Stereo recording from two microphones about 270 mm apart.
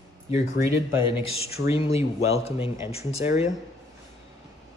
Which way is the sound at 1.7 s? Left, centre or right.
Left.